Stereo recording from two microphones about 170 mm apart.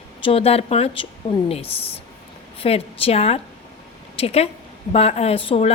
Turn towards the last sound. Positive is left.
turn(degrees=35)  # may be behind; listen again after turning